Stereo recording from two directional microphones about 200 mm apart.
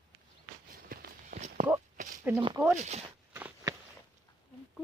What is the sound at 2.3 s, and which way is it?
Speech, 10° right (ahead or behind).